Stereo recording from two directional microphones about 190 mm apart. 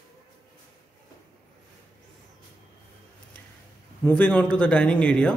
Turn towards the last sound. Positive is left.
turn(degrees=5)  # may be behind; listen again after turning